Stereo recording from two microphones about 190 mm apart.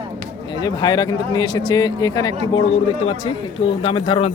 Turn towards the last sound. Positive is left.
turn(degrees=30)  # may be behind; listen again after turning